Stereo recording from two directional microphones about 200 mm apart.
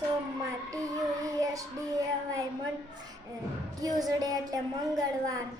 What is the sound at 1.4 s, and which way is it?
Child singing, 15° right (ahead or behind).